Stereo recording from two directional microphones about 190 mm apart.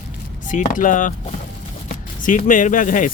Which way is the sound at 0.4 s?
40° left (ahead or behind).